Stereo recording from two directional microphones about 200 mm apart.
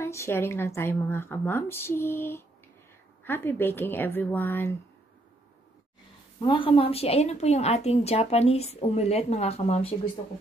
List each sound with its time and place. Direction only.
0.0 s a woman's voice: 15° left (ahead or behind)
6.4 s a woman's voice: 25° left (ahead or behind)